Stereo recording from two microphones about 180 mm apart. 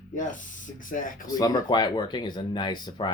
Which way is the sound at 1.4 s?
20° left (ahead or behind).